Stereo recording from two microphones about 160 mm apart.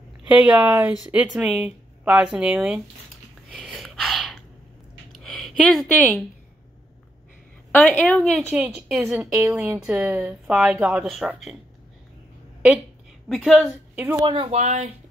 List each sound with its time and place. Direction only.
0.3 s a woman's voice: 5° right (ahead or behind)
3.5 s a sound: centre (ahead or behind)
7.7 s a woman's voice: 10° left (ahead or behind)
8.5 s a woman's voice: 10° right (ahead or behind)
13.3 s a woman's voice: centre (ahead or behind)
13.9 s speech: 15° right (ahead or behind)
14.2 s speech: 35° right (ahead or behind)